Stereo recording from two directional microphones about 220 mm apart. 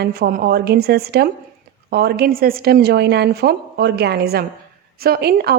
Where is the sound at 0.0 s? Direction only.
45° right (ahead or behind).